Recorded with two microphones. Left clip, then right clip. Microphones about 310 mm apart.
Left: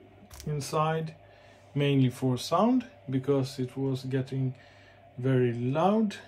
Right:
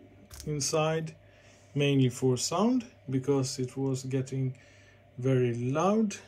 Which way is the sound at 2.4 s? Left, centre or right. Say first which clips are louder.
Left 3 dB; centre.